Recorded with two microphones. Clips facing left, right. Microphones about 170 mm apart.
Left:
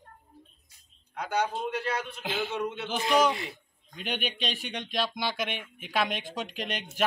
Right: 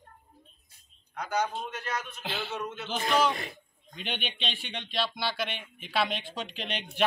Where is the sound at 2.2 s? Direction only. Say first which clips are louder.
Left 7 dB; 15° left (ahead or behind).